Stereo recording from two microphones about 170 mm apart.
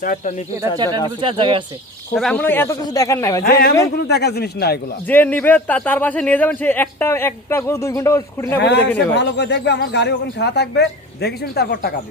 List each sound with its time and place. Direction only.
0.0 s speech: 50° left (ahead or behind)
1.2 s speech: 30° right (ahead or behind)
2.1 s speech: 5° left (ahead or behind)
3.4 s speech: 65° left (ahead or behind)
5.0 s speech: 10° left (ahead or behind)
8.6 s speech: 90° left
8.9 s speech: 10° left (ahead or behind)
9.1 s speech: 90° left; by 11.9 s 65° left (ahead or behind)